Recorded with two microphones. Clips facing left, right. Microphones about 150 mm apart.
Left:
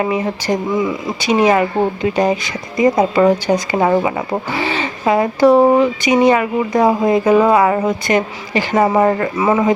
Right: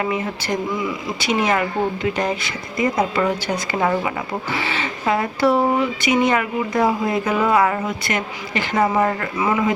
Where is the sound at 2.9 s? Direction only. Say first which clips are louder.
Left 8 dB; 35° left (ahead or behind).